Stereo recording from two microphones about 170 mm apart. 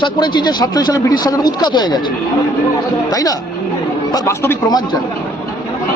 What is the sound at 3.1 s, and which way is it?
A man's voice, 20° left (ahead or behind).